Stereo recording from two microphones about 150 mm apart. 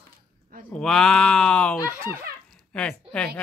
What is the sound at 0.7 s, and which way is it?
Speech, 5° left (ahead or behind).